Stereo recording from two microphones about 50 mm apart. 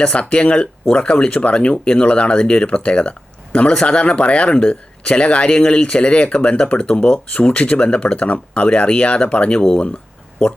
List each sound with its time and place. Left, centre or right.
0.0 s speech: left